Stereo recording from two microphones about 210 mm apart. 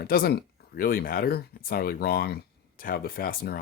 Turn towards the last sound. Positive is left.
turn(degrees=45)  # may be behind; listen again after turning